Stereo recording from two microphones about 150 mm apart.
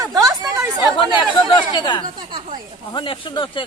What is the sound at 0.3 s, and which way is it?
Chatter, 20° right (ahead or behind).